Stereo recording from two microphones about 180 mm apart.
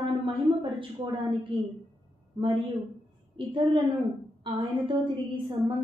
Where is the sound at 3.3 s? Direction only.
30° right (ahead or behind).